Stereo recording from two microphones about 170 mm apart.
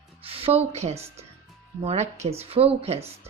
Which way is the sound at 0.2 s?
35° right (ahead or behind).